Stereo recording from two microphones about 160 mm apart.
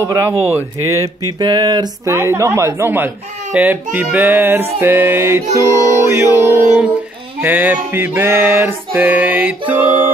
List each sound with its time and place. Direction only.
0.4 s speech: 15° left (ahead or behind)
1.2 s a sound: 25° right (ahead or behind)
2.1 s music: 15° right (ahead or behind)